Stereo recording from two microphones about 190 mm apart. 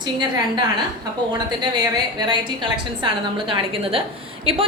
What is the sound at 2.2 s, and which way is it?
A woman's voice, 25° right (ahead or behind).